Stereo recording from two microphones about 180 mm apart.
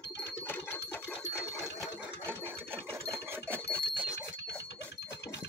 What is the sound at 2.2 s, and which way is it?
Sewing machine, 10° right (ahead or behind).